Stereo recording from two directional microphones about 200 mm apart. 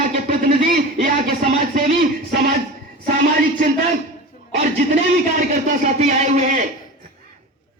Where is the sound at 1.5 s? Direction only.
35° right (ahead or behind).